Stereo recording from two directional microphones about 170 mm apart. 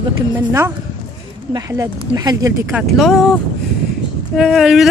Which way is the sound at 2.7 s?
Centre (ahead or behind).